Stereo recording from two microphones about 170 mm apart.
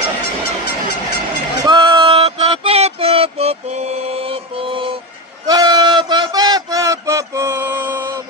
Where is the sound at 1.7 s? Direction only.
30° right (ahead or behind).